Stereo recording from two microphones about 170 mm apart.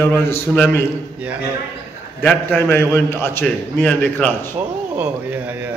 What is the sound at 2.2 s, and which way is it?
A man's voice, 10° left (ahead or behind).